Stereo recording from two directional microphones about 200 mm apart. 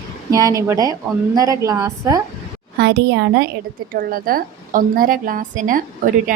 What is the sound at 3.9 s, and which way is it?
A woman's voice, 45° right (ahead or behind).